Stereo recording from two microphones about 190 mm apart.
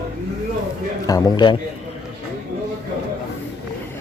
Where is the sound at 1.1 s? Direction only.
20° left (ahead or behind).